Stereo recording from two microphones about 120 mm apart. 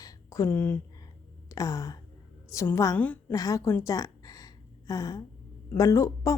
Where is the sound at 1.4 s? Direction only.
30° left (ahead or behind).